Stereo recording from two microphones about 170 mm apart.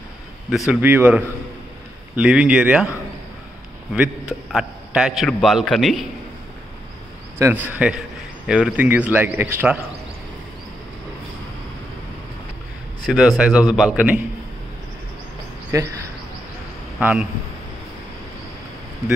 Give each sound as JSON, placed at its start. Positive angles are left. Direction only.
{"t": 0.7, "sound": "a man's voice", "side_deg": -10}
{"t": 3.9, "sound": "a man's voice", "side_deg": -5}
{"t": 7.3, "sound": "a man's voice", "side_deg": -15}
{"t": 13.0, "sound": "a man's voice", "side_deg": -5}
{"t": 15.7, "sound": "a man's voice", "side_deg": -15}
{"t": 17.0, "sound": "a man's voice", "side_deg": -5}